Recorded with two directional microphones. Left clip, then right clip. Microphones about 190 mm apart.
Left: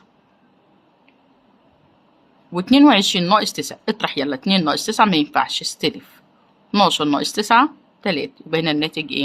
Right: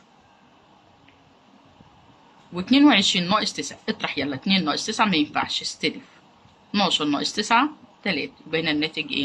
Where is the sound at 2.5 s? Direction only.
45° left (ahead or behind).